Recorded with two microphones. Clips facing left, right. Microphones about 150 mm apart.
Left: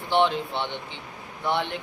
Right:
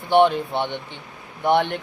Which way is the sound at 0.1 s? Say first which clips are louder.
Right 6 dB; 55° right (ahead or behind).